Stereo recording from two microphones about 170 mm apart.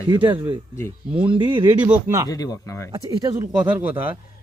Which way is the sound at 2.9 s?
20° right (ahead or behind).